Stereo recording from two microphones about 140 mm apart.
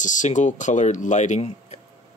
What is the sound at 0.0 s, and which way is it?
Speech, 60° left (ahead or behind).